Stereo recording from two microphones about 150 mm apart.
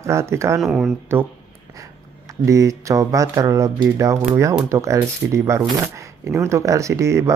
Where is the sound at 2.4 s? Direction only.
20° right (ahead or behind).